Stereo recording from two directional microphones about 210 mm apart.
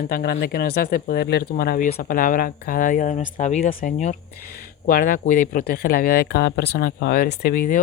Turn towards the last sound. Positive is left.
turn(degrees=40)  # may be behind; listen again after turning